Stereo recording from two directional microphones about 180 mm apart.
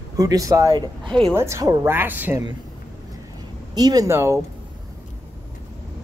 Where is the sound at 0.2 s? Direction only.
20° right (ahead or behind).